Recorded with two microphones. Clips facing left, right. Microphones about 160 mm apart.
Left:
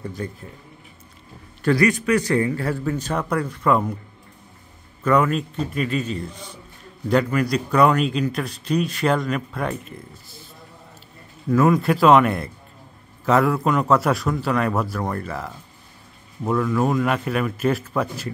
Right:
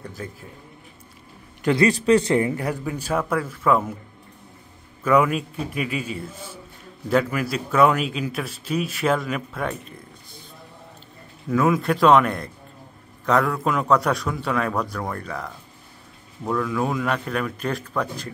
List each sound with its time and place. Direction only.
0.0 s a man's voice: centre (ahead or behind)
1.6 s a man's voice: 20° right (ahead or behind)
1.9 s a man's voice: 30° right (ahead or behind); by 3.9 s 5° right (ahead or behind)
5.0 s a man's voice: 10° right (ahead or behind)
11.5 s a man's voice: centre (ahead or behind)